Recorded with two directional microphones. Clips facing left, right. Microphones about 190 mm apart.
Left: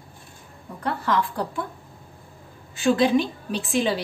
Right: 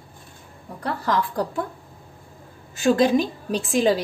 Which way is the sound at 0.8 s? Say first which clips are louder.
Even; 40° right (ahead or behind).